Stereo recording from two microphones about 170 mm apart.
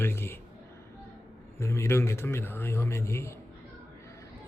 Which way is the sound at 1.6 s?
15° left (ahead or behind).